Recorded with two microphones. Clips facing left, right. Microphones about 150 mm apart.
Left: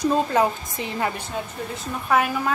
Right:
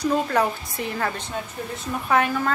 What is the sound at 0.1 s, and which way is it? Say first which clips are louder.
A woman's voice: left 1 dB; 20° left (ahead or behind).